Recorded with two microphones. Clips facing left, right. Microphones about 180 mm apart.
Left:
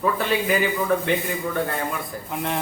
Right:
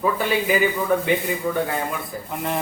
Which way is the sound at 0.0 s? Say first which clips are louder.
Right 1 dB; 5° right (ahead or behind).